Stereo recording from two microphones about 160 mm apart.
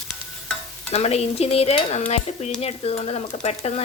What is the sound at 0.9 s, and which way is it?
Dishes, 40° left (ahead or behind).